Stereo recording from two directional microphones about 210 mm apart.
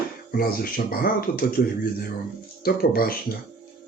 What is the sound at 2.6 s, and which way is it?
Speech, 45° left (ahead or behind).